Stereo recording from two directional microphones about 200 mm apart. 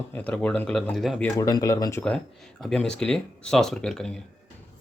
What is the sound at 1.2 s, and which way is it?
Speech, 20° left (ahead or behind).